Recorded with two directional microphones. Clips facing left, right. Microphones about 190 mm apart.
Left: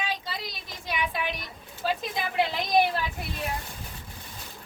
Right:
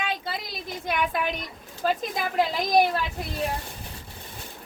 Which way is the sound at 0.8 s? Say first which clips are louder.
Right 4 dB; 55° right (ahead or behind).